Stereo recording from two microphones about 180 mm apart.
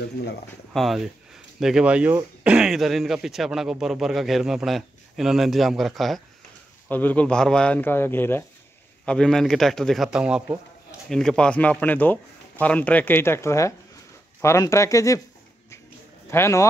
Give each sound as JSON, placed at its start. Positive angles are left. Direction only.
{"t": 0.0, "sound": "speech", "side_deg": 65}
{"t": 0.7, "sound": "speech", "side_deg": 0}
{"t": 16.3, "sound": "speech", "side_deg": 15}